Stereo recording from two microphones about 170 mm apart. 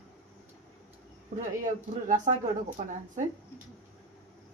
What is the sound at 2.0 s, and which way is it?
Speech, 45° right (ahead or behind).